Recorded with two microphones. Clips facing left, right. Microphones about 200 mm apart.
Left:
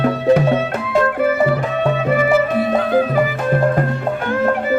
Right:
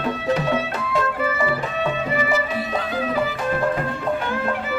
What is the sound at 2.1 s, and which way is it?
Music, 55° left (ahead or behind).